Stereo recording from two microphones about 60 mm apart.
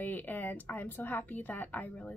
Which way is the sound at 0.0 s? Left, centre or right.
Left.